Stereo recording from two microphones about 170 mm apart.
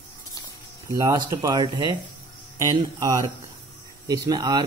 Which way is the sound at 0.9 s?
20° right (ahead or behind).